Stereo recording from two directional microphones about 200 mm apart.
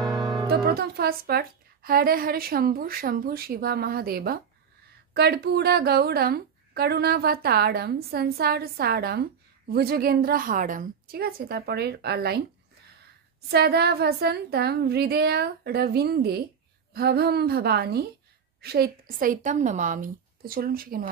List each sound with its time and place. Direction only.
0.5 s a woman's voice: 50° right (ahead or behind)
13.5 s a woman's voice: 50° right (ahead or behind)